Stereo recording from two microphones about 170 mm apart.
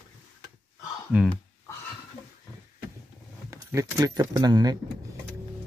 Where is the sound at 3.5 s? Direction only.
20° right (ahead or behind).